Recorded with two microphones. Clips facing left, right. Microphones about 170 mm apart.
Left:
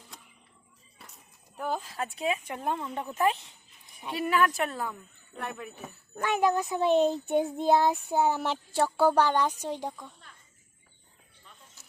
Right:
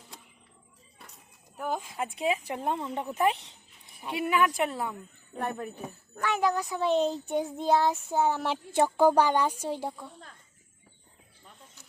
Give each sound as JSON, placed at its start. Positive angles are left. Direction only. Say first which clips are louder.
{"t": 1.5, "sound": "a woman's voice", "louder": "even", "side_deg": -10}
{"t": 4.6, "sound": "speech", "louder": "right 2 dB", "side_deg": -25}
{"t": 5.3, "sound": "speech", "louder": "right 4 dB", "side_deg": -40}
{"t": 6.1, "sound": "a child's voice", "louder": "left 2 dB", "side_deg": 20}
{"t": 8.7, "sound": "a woman's voice", "louder": "right 2 dB", "side_deg": -15}